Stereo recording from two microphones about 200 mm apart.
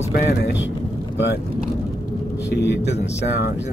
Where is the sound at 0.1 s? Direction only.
50° left (ahead or behind).